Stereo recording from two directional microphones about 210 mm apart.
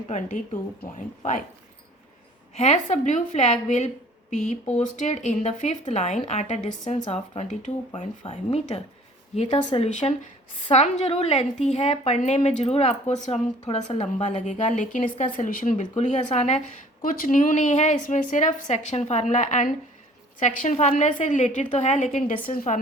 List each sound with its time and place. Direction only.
0.9 s a woman's voice: 35° left (ahead or behind)
2.6 s a woman's voice: 30° left (ahead or behind)